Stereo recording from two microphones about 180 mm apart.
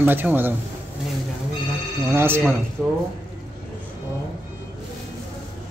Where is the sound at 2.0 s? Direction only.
15° right (ahead or behind).